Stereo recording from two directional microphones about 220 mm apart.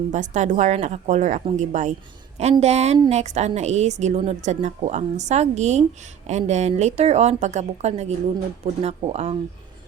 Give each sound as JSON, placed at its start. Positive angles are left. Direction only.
{"t": 0.1, "sound": "a woman's voice", "side_deg": -35}